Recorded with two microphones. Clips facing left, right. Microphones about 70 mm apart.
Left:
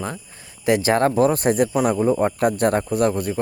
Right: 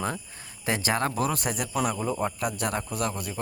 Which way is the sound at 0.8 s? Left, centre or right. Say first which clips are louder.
Left 9 dB; left.